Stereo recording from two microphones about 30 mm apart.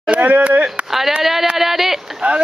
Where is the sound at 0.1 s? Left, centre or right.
Right.